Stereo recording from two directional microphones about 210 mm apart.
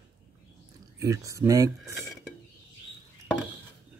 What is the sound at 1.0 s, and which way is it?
Speech, 15° right (ahead or behind).